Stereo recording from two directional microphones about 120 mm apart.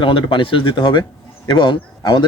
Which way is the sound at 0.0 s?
45° left (ahead or behind).